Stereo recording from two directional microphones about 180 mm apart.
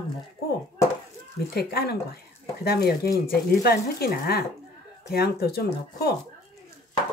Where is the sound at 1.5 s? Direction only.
60° left (ahead or behind).